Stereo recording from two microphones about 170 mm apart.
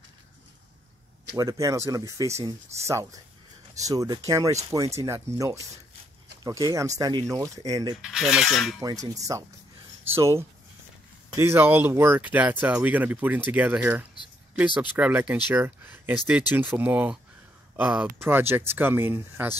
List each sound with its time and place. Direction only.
1.3 s speech: 20° right (ahead or behind)
7.9 s cutlery: 5° right (ahead or behind)
8.7 s speech: 20° right (ahead or behind)